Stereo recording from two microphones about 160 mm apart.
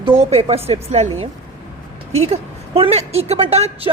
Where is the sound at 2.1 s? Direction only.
40° right (ahead or behind).